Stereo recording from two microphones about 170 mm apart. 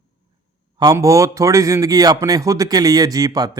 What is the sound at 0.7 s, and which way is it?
A man's voice, 20° right (ahead or behind).